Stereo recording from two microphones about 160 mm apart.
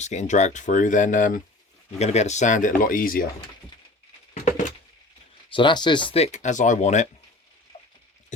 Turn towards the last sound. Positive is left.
turn(degrees=50)  # may be behind; listen again after turning